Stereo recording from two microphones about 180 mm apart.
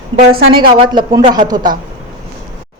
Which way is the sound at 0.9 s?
25° right (ahead or behind).